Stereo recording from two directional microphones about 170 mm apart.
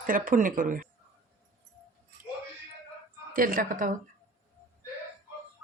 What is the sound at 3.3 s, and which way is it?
Speech, 55° right (ahead or behind).